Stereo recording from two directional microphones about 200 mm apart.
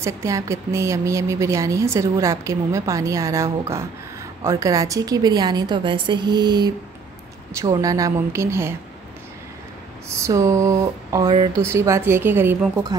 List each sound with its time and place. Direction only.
0.0 s a woman's voice: 15° right (ahead or behind)
10.0 s a woman's voice: 15° right (ahead or behind)